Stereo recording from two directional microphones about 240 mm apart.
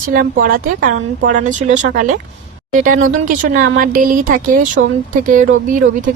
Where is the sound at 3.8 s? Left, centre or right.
Right.